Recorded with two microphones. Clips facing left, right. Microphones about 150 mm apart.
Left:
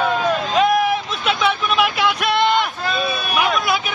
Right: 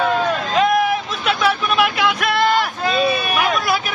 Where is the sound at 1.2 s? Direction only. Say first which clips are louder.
Right 1 dB; centre (ahead or behind).